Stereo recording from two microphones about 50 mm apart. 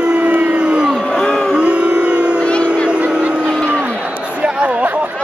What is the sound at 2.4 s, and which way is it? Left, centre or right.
Music, left.